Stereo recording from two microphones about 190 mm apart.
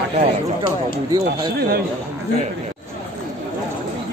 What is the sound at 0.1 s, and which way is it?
Speech, 30° right (ahead or behind).